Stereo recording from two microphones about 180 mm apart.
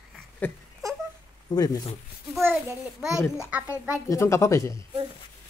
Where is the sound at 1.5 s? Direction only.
25° left (ahead or behind).